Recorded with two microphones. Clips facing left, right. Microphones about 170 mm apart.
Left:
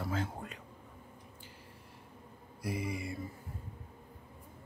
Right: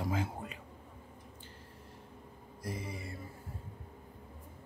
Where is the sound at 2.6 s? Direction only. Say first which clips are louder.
Left 4 dB; 10° left (ahead or behind).